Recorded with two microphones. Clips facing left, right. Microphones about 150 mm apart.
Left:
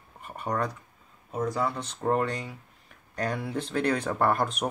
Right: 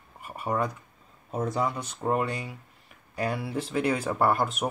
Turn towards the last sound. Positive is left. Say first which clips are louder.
# right 1 dB
turn(degrees=0)  # may be behind; listen again after turning